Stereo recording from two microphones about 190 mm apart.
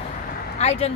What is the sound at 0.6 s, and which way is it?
Speech, 35° left (ahead or behind).